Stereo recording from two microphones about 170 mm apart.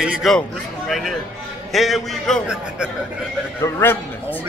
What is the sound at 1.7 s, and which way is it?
A man's voice, centre (ahead or behind).